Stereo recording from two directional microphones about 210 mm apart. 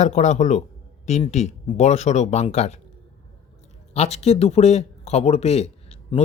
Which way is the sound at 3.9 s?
30° left (ahead or behind).